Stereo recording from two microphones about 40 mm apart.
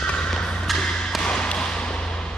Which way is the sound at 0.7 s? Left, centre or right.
Centre.